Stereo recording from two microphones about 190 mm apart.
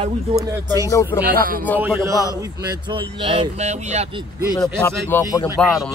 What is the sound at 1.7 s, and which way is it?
Speech, 10° right (ahead or behind).